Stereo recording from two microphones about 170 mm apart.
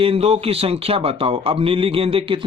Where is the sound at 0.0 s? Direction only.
35° right (ahead or behind).